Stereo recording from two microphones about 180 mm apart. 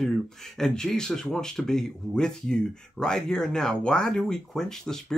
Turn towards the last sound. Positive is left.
turn(degrees=5)  # may be behind; listen again after turning